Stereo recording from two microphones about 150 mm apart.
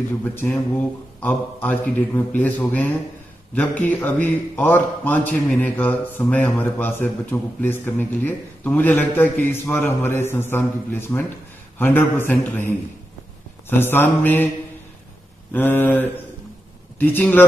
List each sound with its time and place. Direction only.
0.3 s speech: 15° left (ahead or behind)
15.5 s speech: 15° left (ahead or behind)